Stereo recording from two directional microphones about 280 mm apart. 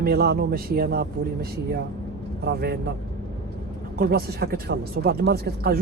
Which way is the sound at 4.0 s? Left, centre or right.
Right.